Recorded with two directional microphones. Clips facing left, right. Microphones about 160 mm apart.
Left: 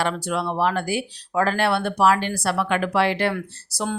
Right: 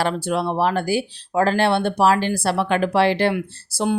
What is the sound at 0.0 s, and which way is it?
Speech, 30° right (ahead or behind).